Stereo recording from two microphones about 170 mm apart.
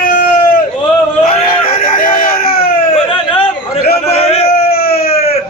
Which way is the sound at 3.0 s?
30° left (ahead or behind).